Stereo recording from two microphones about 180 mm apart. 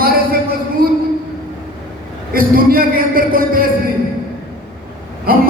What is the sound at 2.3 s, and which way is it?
A man's voice, 55° right (ahead or behind).